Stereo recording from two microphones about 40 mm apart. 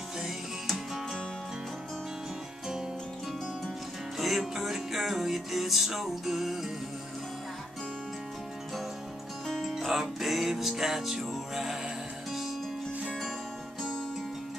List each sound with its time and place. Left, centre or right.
4.2 s music: centre
9.6 s music: centre